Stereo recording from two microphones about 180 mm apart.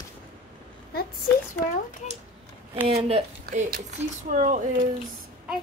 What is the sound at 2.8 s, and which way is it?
Speech, 35° right (ahead or behind).